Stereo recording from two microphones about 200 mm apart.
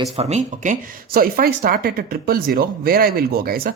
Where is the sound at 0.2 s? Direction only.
35° right (ahead or behind).